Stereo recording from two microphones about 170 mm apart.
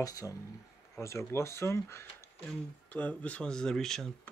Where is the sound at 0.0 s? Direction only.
20° left (ahead or behind).